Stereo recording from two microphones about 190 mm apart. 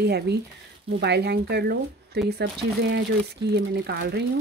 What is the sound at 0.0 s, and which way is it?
Speech, 60° right (ahead or behind).